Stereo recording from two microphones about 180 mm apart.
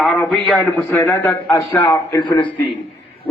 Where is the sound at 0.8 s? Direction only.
10° left (ahead or behind).